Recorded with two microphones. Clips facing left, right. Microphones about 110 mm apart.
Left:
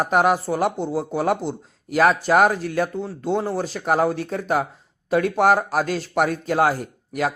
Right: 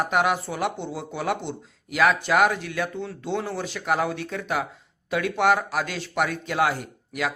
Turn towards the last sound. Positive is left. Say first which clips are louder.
# left 5 dB
turn(degrees=40)  # may be behind; listen again after turning